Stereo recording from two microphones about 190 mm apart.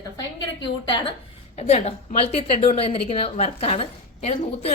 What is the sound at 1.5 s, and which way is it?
A woman's voice, 35° left (ahead or behind).